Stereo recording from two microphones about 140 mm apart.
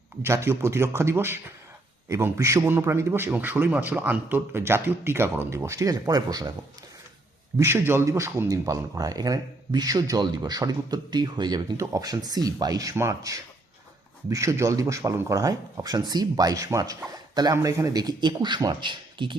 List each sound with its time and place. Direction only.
0.2 s a man's voice: 20° right (ahead or behind)
7.6 s speech: 15° right (ahead or behind); by 19.4 s 35° right (ahead or behind)